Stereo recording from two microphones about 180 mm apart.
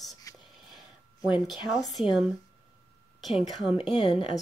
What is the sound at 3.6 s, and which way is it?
Speech, 25° left (ahead or behind).